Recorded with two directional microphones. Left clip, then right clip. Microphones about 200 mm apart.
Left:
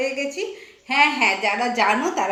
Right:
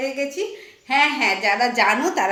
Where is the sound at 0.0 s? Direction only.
20° right (ahead or behind).